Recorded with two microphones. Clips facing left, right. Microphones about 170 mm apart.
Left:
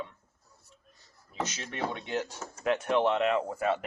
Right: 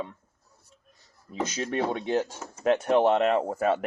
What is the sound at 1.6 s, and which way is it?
Speech, 40° right (ahead or behind).